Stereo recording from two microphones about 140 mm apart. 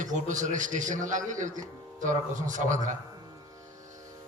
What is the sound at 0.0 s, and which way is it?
A man's voice, 65° right (ahead or behind).